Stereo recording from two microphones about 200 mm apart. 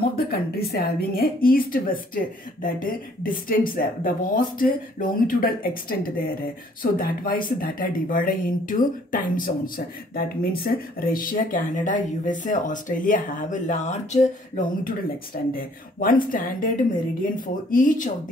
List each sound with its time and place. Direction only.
0.1 s speech: 50° left (ahead or behind)